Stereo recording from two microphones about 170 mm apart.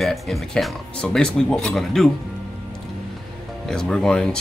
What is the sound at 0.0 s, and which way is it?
Speech, centre (ahead or behind).